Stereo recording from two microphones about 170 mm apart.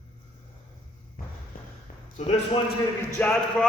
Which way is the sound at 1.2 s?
55° left (ahead or behind).